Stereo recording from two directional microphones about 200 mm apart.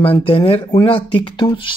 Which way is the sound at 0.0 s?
25° left (ahead or behind).